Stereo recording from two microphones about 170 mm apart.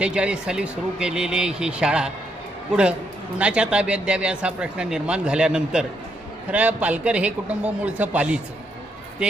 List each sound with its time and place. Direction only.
0.0 s speech: 5° right (ahead or behind)
3.3 s speech: 5° right (ahead or behind)